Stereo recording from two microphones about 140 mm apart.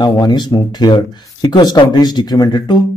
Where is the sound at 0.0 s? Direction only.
30° left (ahead or behind).